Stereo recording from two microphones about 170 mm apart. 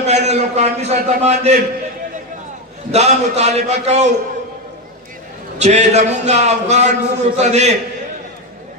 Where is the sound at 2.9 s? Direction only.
40° right (ahead or behind).